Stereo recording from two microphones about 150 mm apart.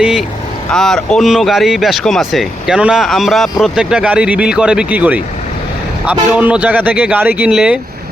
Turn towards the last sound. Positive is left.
turn(degrees=-5)  # may be behind; listen again after turning